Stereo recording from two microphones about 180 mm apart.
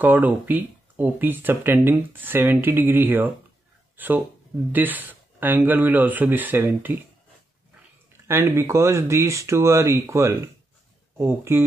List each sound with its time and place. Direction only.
0.0 s speech: 10° right (ahead or behind)
3.9 s a sound: 10° right (ahead or behind)
4.7 s speech: 10° right (ahead or behind)
8.3 s speech: 15° right (ahead or behind)